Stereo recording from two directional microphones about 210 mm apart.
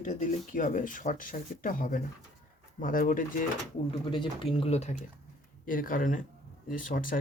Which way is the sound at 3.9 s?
25° left (ahead or behind).